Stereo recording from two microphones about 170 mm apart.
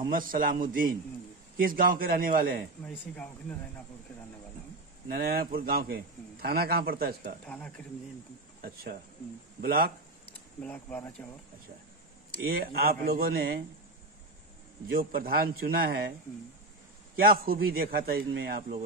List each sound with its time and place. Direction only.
0.1 s a man's voice: 55° right (ahead or behind)
2.9 s speech: 5° left (ahead or behind)
5.0 s a man's voice: 65° right (ahead or behind)
7.4 s speech: 10° left (ahead or behind)
8.5 s cricket: 60° right (ahead or behind)
9.6 s speech: 65° right (ahead or behind)
10.6 s speech: 10° left (ahead or behind)
12.4 s a man's voice: 65° right (ahead or behind)
14.9 s a man's voice: 60° right (ahead or behind)
17.1 s a man's voice: 60° right (ahead or behind)